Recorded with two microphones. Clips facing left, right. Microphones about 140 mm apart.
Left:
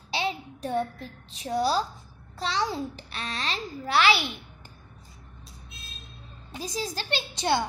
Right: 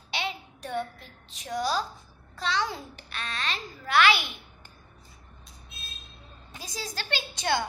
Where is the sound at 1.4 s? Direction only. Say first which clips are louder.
Left 3 dB; 30° left (ahead or behind).